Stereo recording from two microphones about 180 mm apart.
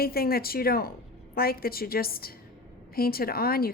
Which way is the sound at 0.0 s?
55° left (ahead or behind).